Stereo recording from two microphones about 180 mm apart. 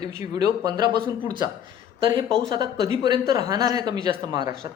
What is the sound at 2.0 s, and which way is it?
A woman's voice, 25° right (ahead or behind).